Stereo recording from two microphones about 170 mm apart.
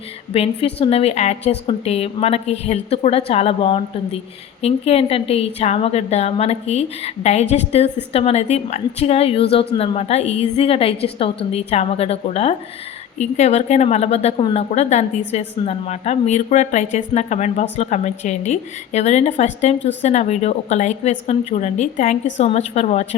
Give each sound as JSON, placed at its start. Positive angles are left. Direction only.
{"t": 0.3, "sound": "a woman's voice", "side_deg": 35}